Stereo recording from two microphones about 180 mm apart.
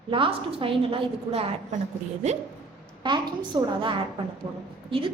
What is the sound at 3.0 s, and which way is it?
A woman's voice, 25° right (ahead or behind).